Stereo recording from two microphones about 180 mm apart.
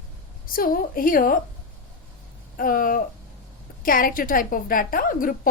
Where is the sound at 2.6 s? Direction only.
50° left (ahead or behind).